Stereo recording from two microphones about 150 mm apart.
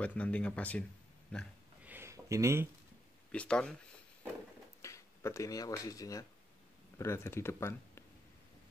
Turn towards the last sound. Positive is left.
turn(degrees=15)  # may be behind; listen again after turning